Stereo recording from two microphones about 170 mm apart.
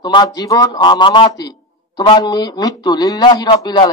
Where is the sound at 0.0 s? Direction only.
25° left (ahead or behind).